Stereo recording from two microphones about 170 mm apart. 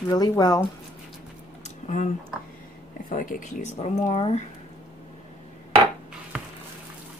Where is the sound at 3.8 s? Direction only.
35° left (ahead or behind).